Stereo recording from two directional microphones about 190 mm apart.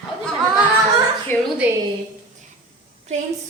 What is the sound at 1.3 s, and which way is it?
Speech, 10° left (ahead or behind).